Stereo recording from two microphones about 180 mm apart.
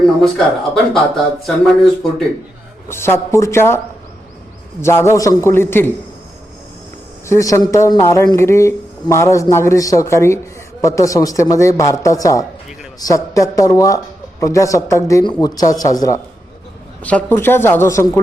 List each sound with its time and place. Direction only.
0.0 s speech: centre (ahead or behind)
2.9 s a man's voice: 15° left (ahead or behind)
4.8 s a man's voice: 15° left (ahead or behind)
7.3 s a man's voice: 15° left (ahead or behind)
17.0 s a man's voice: 10° left (ahead or behind)